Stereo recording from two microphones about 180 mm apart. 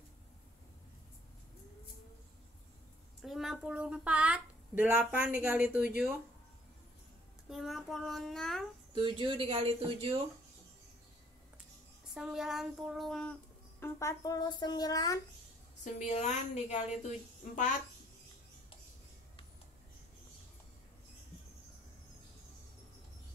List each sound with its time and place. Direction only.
3.2 s a child's voice: centre (ahead or behind)
7.4 s child singing: centre (ahead or behind)
8.9 s speech: 30° right (ahead or behind)
12.1 s child singing: 5° right (ahead or behind)
13.7 s speech: 15° left (ahead or behind)
15.8 s a woman's voice: 40° left (ahead or behind)